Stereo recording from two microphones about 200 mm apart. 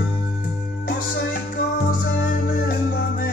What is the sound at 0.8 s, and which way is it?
Music, 45° left (ahead or behind).